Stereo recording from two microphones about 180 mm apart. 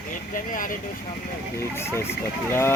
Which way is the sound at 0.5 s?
50° left (ahead or behind).